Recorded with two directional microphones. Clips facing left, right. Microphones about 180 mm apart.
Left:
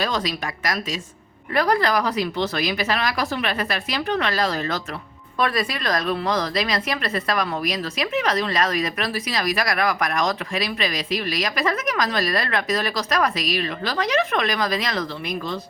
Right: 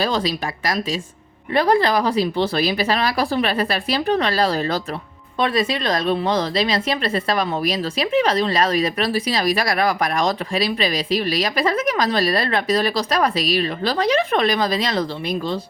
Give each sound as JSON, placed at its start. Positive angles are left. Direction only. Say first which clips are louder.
{"t": 0.0, "sound": "a woman's voice", "louder": "right 4 dB", "side_deg": -30}